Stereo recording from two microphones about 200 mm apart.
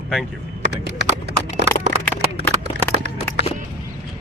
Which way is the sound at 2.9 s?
30° right (ahead or behind).